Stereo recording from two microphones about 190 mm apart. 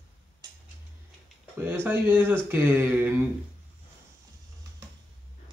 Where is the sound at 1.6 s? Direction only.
10° right (ahead or behind).